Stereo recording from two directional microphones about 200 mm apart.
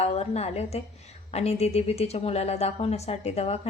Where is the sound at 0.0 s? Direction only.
30° left (ahead or behind).